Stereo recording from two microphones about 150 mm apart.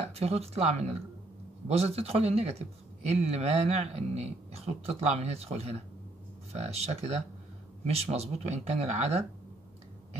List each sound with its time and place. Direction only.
0.0 s speech: 45° right (ahead or behind)